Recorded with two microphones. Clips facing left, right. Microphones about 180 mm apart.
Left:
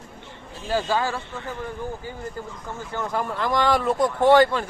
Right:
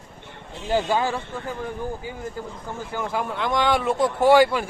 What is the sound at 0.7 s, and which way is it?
Speech, 20° right (ahead or behind).